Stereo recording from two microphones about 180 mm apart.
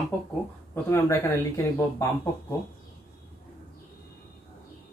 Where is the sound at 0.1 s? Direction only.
10° left (ahead or behind).